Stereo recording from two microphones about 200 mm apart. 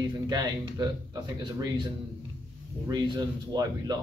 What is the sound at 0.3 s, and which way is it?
Speech, 20° right (ahead or behind).